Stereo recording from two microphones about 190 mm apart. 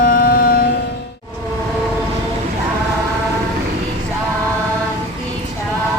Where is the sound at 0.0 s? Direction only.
50° left (ahead or behind).